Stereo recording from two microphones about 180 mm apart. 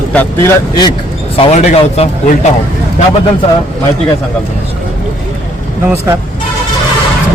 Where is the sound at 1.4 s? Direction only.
35° left (ahead or behind).